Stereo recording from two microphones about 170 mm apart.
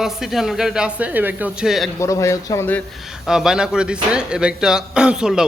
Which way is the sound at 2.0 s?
15° left (ahead or behind).